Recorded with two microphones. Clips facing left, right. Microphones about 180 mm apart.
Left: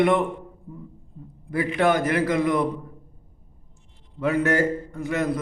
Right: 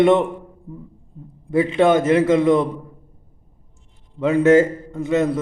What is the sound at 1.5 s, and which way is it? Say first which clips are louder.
A man's voice: right 6 dB; 25° right (ahead or behind).